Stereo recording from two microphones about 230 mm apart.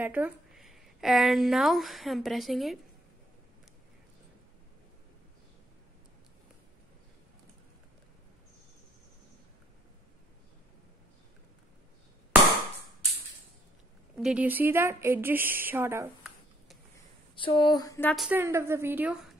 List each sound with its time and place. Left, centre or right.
0.0 s a woman's voice: centre
14.1 s speech: centre
17.4 s speech: left
18.1 s speech: centre